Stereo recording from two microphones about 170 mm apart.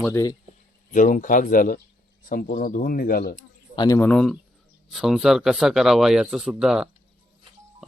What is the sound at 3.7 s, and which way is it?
Speech, 25° left (ahead or behind).